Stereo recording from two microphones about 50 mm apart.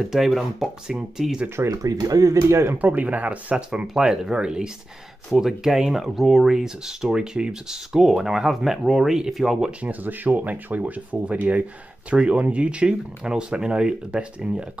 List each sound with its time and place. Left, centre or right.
0.0 s speech: centre
2.2 s speech: right
3.0 s speech: right
3.8 s speech: centre
9.7 s speech: right
10.0 s speech: right